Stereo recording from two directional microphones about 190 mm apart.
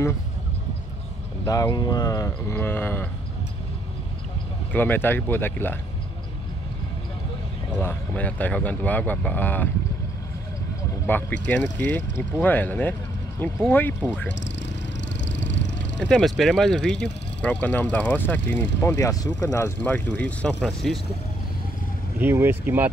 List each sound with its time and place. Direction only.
1.4 s speech: 20° left (ahead or behind)
4.7 s speech: 10° left (ahead or behind)
7.8 s speech: 5° left (ahead or behind)
11.1 s speech: 10° left (ahead or behind)
15.0 s vehicle: 70° left (ahead or behind)
16.0 s speech: 5° left (ahead or behind)
22.2 s speech: 10° right (ahead or behind)